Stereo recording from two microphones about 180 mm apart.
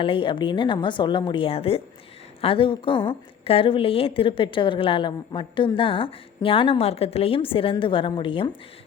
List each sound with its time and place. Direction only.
0.0 s a woman's voice: 30° left (ahead or behind)